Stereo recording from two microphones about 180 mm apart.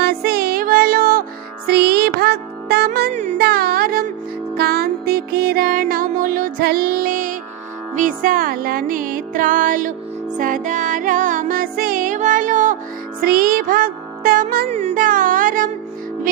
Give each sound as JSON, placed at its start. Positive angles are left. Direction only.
{"t": 0.0, "sound": "music", "side_deg": -60}
{"t": 3.1, "sound": "music", "side_deg": -40}
{"t": 3.3, "sound": "music", "side_deg": -60}
{"t": 14.7, "sound": "music", "side_deg": -35}